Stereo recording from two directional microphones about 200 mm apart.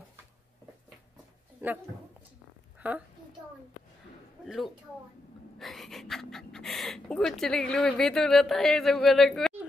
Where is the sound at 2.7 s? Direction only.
5° right (ahead or behind).